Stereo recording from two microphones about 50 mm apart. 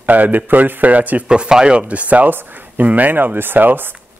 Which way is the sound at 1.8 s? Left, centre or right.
Right.